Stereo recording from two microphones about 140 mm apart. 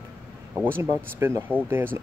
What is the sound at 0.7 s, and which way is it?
Speech, 15° right (ahead or behind).